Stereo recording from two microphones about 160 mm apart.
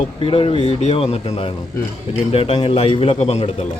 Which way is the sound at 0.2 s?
35° left (ahead or behind).